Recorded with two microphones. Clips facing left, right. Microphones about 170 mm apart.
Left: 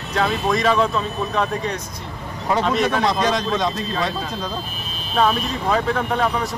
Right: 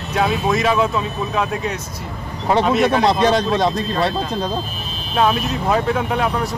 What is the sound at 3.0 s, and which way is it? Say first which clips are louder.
Speech: right 4 dB; 35° right (ahead or behind).